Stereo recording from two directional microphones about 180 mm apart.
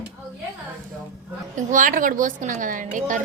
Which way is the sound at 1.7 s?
45° right (ahead or behind).